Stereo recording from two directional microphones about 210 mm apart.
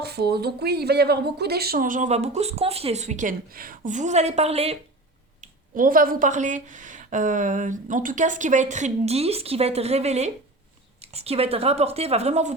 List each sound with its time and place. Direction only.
0.0 s speech: 50° right (ahead or behind); by 4.8 s 30° right (ahead or behind)
5.4 s speech: 40° right (ahead or behind)